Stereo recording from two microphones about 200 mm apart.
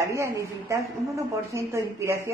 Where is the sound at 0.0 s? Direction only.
15° right (ahead or behind).